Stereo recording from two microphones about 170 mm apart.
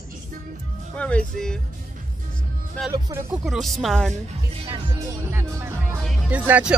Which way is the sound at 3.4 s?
Centre (ahead or behind).